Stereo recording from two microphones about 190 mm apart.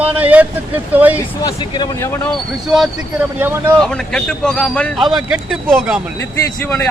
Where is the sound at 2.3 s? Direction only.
Centre (ahead or behind).